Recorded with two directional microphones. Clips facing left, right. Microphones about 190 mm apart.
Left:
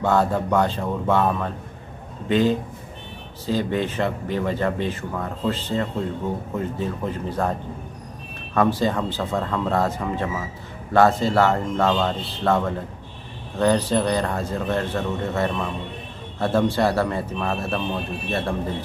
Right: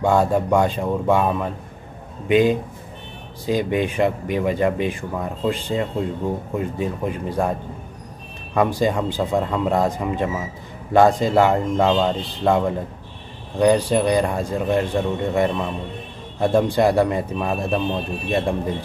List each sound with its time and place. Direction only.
0.0 s speech: 15° right (ahead or behind)
8.5 s speech: 15° right (ahead or behind)